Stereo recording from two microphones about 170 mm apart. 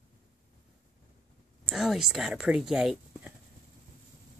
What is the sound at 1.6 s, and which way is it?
Speech, centre (ahead or behind).